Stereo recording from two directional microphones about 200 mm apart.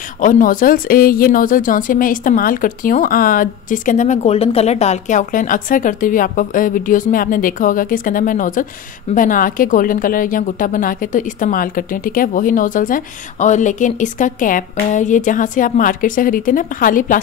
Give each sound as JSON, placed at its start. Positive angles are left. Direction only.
{"t": 0.2, "sound": "speech", "side_deg": 40}